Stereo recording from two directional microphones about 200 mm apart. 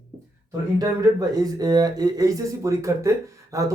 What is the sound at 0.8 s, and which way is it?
Speech, 15° right (ahead or behind).